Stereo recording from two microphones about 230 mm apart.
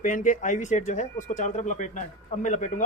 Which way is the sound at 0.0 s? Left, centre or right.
Left.